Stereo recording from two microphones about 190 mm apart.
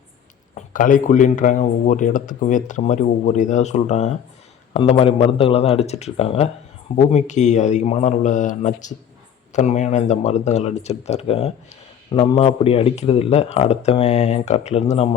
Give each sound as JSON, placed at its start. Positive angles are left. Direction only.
{"t": 0.5, "sound": "speech", "side_deg": 45}